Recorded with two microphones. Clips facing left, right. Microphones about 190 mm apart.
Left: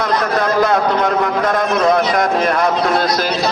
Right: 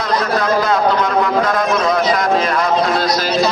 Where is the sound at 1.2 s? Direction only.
60° left (ahead or behind).